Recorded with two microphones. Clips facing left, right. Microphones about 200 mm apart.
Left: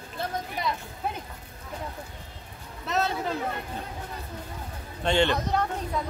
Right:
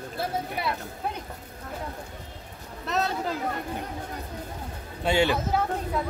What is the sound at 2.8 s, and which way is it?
Speech, centre (ahead or behind).